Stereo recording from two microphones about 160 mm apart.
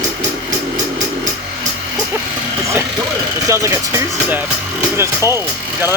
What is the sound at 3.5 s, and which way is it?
Speech, 20° right (ahead or behind).